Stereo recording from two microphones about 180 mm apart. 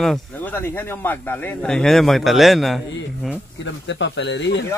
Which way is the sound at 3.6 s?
90° left.